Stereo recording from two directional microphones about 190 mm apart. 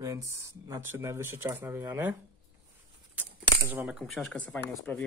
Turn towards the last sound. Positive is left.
turn(degrees=5)  # may be behind; listen again after turning